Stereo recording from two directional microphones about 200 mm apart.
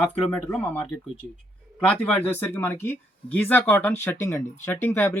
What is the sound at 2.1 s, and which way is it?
Speech, 10° left (ahead or behind).